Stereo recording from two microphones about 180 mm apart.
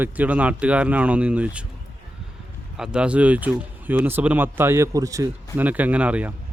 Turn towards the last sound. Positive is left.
turn(degrees=-5)  # may be behind; listen again after turning